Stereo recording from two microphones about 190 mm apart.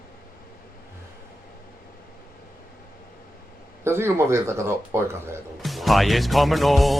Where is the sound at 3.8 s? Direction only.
15° right (ahead or behind).